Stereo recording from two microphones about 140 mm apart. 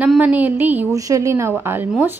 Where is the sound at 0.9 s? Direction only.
25° right (ahead or behind).